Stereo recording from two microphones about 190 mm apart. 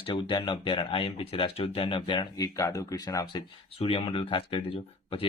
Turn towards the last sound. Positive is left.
turn(degrees=30)  # may be behind; listen again after turning